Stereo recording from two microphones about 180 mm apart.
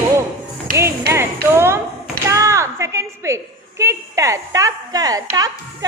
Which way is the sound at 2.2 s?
15° right (ahead or behind).